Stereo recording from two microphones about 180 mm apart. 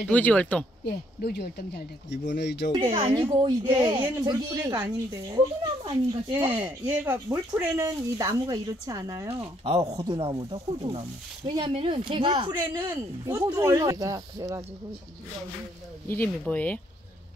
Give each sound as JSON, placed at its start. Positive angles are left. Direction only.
{"t": 0.1, "sound": "speech", "side_deg": 5}
{"t": 0.8, "sound": "speech", "side_deg": 60}
{"t": 3.3, "sound": "speech", "side_deg": -20}
{"t": 6.4, "sound": "speech", "side_deg": -10}
{"t": 9.4, "sound": "speech", "side_deg": -30}
{"t": 16.1, "sound": "speech", "side_deg": 10}